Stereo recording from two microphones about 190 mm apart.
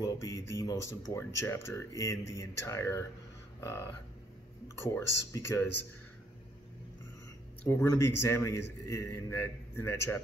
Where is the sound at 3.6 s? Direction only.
15° left (ahead or behind).